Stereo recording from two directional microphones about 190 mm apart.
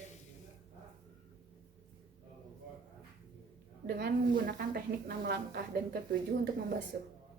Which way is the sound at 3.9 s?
60° right (ahead or behind).